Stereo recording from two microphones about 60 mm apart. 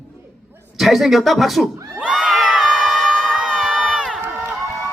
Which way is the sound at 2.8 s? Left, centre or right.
Centre.